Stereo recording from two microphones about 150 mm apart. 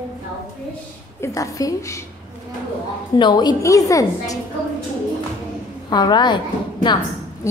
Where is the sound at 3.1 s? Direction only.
30° left (ahead or behind).